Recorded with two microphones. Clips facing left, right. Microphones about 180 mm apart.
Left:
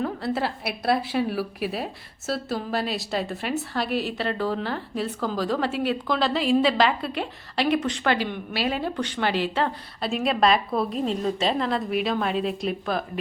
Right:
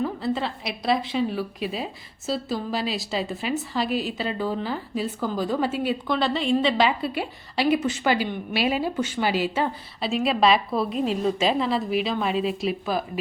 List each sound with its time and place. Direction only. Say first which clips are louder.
0.0 s a woman's voice: even; 5° left (ahead or behind)